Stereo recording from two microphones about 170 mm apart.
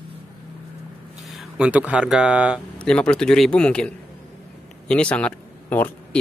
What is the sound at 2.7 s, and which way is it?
Speech, 5° left (ahead or behind).